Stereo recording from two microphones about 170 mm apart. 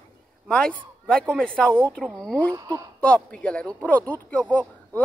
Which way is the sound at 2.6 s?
20° right (ahead or behind).